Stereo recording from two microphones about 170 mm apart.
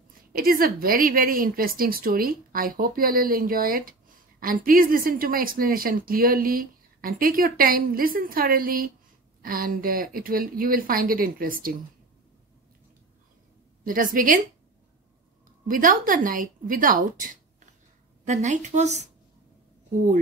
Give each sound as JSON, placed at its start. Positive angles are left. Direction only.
{"t": 0.3, "sound": "a woman's voice", "side_deg": -60}
{"t": 13.8, "sound": "speech", "side_deg": -55}
{"t": 15.7, "sound": "speech", "side_deg": -55}